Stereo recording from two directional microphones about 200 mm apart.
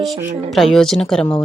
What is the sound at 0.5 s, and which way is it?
Speech, centre (ahead or behind).